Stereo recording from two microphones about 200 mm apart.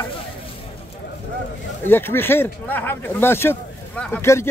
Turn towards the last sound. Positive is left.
turn(degrees=15)  # may be behind; listen again after turning